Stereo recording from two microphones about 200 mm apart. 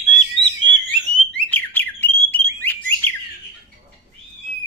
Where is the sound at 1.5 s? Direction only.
10° left (ahead or behind).